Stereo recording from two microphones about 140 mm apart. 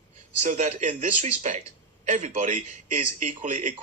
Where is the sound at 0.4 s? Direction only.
60° right (ahead or behind).